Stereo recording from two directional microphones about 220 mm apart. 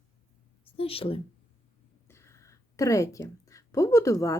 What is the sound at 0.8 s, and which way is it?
Speech, 25° left (ahead or behind).